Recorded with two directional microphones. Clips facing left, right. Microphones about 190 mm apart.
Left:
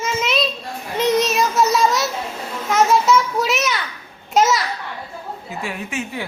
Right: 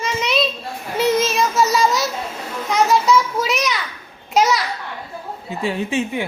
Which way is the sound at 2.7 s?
Centre (ahead or behind).